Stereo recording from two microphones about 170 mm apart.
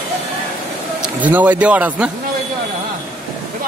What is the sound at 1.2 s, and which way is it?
Speech, 10° right (ahead or behind).